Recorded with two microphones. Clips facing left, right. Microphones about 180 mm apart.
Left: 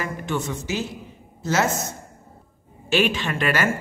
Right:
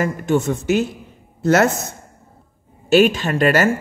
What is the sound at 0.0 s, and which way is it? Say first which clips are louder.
A woman's voice: right 9 dB; 45° right (ahead or behind).